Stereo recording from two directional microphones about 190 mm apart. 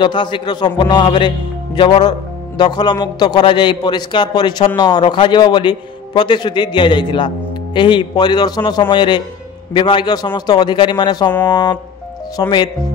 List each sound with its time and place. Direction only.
0.0 s a man's voice: 25° left (ahead or behind)